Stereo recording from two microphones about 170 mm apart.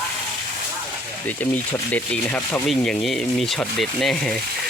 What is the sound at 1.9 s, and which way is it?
Speech, 10° left (ahead or behind).